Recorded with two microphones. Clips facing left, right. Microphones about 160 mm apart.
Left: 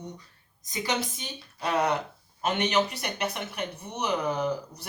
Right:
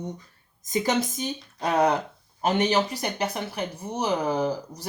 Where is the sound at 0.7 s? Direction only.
45° right (ahead or behind).